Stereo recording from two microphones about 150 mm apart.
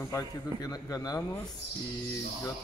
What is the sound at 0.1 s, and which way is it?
Speech, 20° left (ahead or behind).